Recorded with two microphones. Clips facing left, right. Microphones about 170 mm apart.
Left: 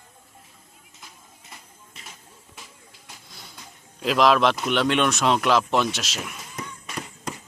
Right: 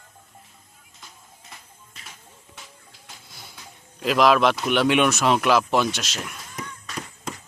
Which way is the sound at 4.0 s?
Centre (ahead or behind).